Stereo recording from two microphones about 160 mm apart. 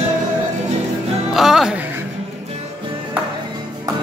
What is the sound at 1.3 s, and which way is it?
Music, centre (ahead or behind).